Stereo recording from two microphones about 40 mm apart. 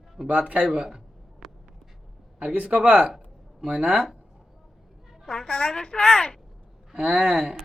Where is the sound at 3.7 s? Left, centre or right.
Right.